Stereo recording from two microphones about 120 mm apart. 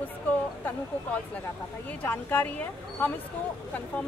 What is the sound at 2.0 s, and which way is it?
Speech, 15° left (ahead or behind).